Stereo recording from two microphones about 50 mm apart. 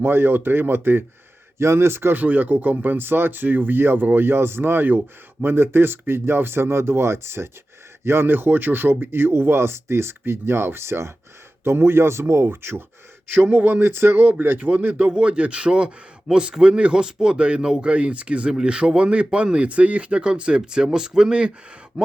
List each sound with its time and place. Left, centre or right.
0.0 s speech: right
1.5 s speech: right
2.1 s speech: right
13.3 s speech: right
15.1 s speech: right
22.0 s speech: centre